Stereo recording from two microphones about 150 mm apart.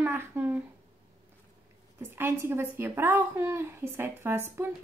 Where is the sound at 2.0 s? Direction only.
15° right (ahead or behind).